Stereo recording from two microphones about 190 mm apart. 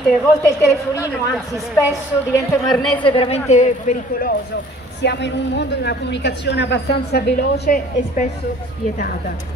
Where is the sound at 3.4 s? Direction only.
40° left (ahead or behind).